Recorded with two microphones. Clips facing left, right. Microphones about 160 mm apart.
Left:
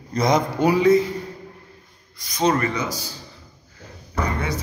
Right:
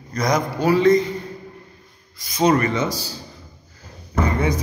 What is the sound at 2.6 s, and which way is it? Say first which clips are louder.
Speech: right 3 dB; 25° right (ahead or behind).